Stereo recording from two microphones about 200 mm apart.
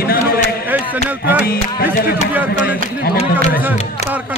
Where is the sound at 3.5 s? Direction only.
10° right (ahead or behind).